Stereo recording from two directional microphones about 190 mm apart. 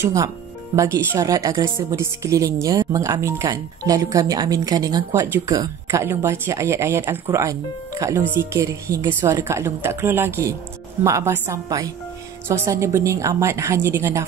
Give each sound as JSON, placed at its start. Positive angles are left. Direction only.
{"t": 0.0, "sound": "speech", "side_deg": -15}